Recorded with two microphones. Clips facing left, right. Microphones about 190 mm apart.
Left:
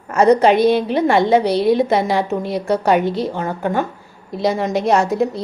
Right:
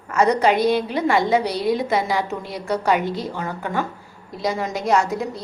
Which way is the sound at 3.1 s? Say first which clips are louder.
Left 6 dB; 65° left (ahead or behind).